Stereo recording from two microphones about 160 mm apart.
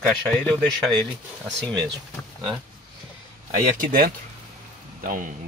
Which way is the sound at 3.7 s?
60° right (ahead or behind).